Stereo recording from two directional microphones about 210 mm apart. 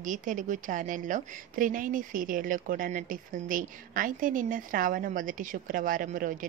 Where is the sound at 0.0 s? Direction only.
40° right (ahead or behind).